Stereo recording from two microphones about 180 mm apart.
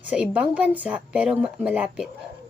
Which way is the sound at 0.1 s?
10° right (ahead or behind).